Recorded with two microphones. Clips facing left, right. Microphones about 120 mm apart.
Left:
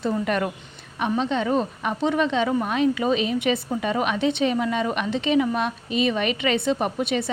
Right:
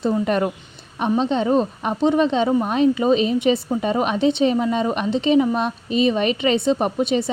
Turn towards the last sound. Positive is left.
turn(degrees=-30)  # may be behind; listen again after turning